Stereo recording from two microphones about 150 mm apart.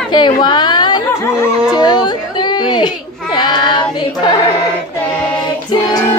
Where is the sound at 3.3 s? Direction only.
30° left (ahead or behind).